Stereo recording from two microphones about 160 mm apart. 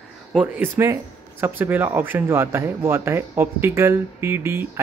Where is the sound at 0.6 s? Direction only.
15° right (ahead or behind).